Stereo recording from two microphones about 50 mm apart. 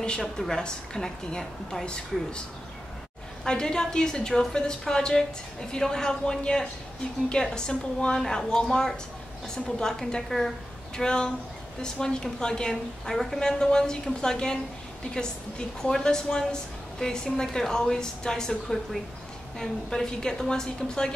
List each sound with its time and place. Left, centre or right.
0.0 s a woman's voice: centre
3.4 s a woman's voice: centre